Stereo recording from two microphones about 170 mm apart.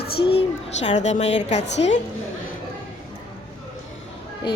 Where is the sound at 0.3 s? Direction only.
40° left (ahead or behind).